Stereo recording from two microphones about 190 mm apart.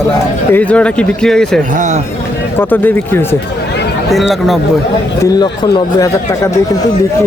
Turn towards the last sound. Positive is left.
turn(degrees=20)  # may be behind; listen again after turning